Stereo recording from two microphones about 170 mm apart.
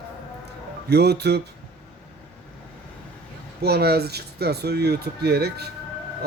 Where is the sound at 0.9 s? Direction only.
75° right (ahead or behind).